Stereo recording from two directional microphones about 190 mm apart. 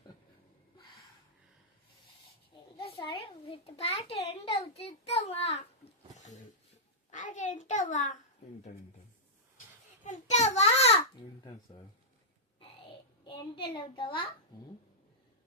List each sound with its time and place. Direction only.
2.8 s a child's voice: 25° left (ahead or behind)
7.1 s a child's voice: 40° left (ahead or behind)
10.0 s a sound: 35° left (ahead or behind)
13.2 s child singing: 25° left (ahead or behind)
13.7 s a child's voice: 25° left (ahead or behind)